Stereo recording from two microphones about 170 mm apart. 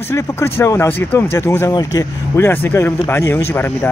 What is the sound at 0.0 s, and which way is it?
Speech, 15° left (ahead or behind).